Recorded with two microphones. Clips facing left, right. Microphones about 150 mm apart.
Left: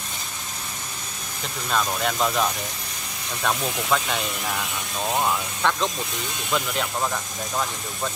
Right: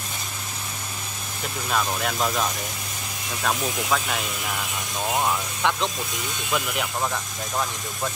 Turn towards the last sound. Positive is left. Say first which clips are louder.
# left 1 dB
turn(degrees=-5)  # may be behind; listen again after turning